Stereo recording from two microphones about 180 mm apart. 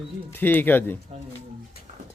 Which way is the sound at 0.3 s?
10° left (ahead or behind).